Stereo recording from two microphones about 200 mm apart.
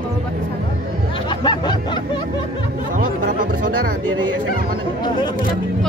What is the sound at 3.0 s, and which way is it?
Music, 45° right (ahead or behind).